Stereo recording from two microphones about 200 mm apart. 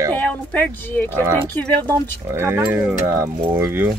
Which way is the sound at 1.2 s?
15° right (ahead or behind).